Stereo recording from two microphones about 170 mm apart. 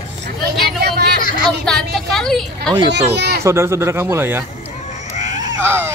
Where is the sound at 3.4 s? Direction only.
15° right (ahead or behind).